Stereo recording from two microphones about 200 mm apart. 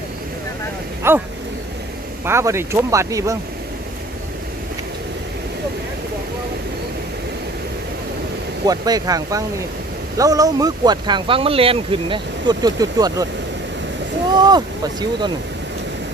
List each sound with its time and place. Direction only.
1.0 s speech: 10° right (ahead or behind)
2.2 s speech: 15° right (ahead or behind)
8.6 s speech: 20° right (ahead or behind)
14.3 s speech: 20° right (ahead or behind)